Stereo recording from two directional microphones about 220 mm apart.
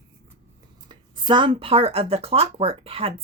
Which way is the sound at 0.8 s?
20° right (ahead or behind).